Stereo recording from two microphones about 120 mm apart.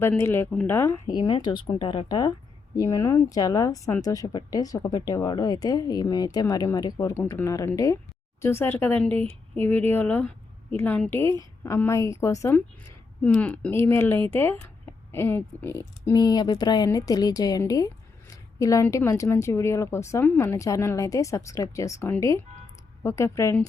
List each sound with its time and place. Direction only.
0.2 s speech: 20° left (ahead or behind)
1.0 s speech: 35° left (ahead or behind)
2.7 s speech: 25° left (ahead or behind)
7.1 s speech: 15° left (ahead or behind)
13.2 s speech: 10° left (ahead or behind)
13.7 s speech: 20° left (ahead or behind)